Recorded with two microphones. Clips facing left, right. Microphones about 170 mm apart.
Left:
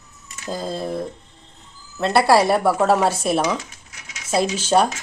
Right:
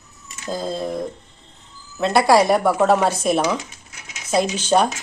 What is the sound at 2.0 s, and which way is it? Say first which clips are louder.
Speech: right 1 dB; 5° left (ahead or behind).